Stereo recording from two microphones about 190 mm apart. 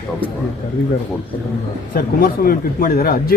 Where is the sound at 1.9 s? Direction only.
50° left (ahead or behind).